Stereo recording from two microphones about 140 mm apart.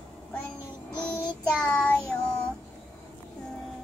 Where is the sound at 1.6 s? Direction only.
5° left (ahead or behind).